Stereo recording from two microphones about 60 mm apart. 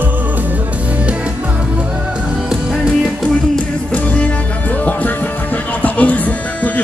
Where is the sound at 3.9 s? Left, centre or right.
Left.